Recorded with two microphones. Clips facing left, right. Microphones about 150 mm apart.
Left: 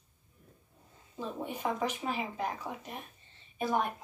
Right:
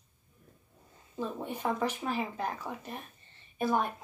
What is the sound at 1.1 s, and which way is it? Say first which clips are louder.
Speech: right 2 dB; 15° left (ahead or behind).